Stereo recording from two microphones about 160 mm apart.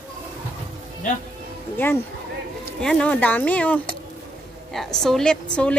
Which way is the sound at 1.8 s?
15° left (ahead or behind).